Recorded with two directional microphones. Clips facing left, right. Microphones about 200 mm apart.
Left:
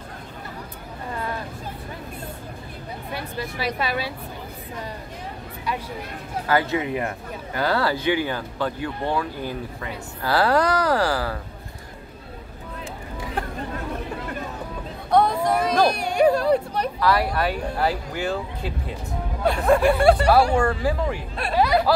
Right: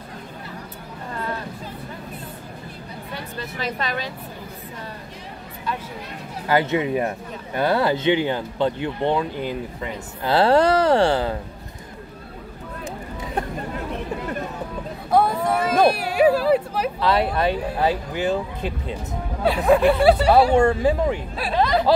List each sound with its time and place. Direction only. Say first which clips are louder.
3.2 s speech: left 1 dB; 10° left (ahead or behind)
6.4 s speech: right 2 dB; 20° right (ahead or behind)
15.0 s a sound: even; 5° right (ahead or behind)
15.9 s speech: right 1 dB; 5° right (ahead or behind)
17.0 s speech: right 2 dB; 25° right (ahead or behind)
19.4 s speech: right 2 dB; 5° right (ahead or behind)
20.5 s speech: right 4 dB; 20° right (ahead or behind)
21.5 s speech: left 1 dB; 10° left (ahead or behind)